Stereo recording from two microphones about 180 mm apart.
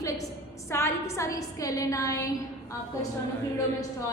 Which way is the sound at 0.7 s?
15° left (ahead or behind).